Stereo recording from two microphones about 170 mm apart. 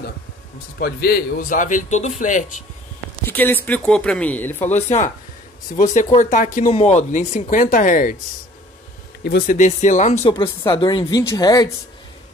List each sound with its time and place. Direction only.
0.7 s a man's voice: 60° left (ahead or behind)
3.3 s speech: 10° left (ahead or behind)
4.8 s a man's voice: 40° left (ahead or behind)
6.7 s a man's voice: 40° left (ahead or behind)
9.5 s a man's voice: 45° left (ahead or behind)
10.3 s speech: 30° left (ahead or behind)